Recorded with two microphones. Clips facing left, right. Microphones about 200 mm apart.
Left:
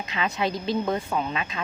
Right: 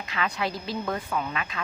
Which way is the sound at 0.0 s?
20° left (ahead or behind).